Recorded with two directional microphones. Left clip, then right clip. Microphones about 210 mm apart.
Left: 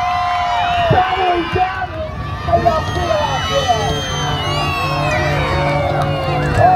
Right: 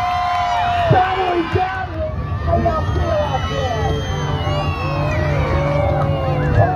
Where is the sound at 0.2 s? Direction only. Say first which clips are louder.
Left 1 dB; 50° left (ahead or behind).